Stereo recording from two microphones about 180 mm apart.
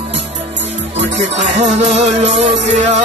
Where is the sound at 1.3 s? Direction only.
40° right (ahead or behind).